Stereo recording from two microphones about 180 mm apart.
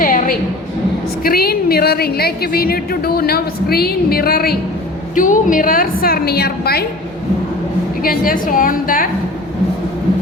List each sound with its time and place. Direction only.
0.0 s a sound: 50° left (ahead or behind)
1.2 s a woman's voice: 55° left (ahead or behind)
5.1 s a woman's voice: 45° left (ahead or behind)
8.0 s a woman's voice: 50° left (ahead or behind)